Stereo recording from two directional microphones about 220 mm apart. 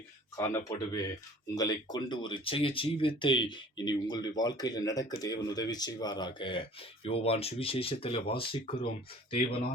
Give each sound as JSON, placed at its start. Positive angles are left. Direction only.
{"t": 0.3, "sound": "speech", "side_deg": 15}